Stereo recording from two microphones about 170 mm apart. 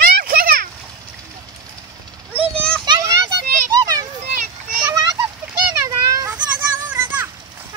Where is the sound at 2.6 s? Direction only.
5° left (ahead or behind).